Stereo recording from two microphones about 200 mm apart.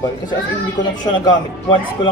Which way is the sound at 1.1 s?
25° left (ahead or behind).